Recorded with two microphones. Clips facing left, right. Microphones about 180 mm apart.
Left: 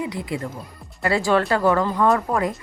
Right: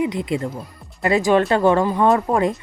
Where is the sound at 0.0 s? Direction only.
20° right (ahead or behind).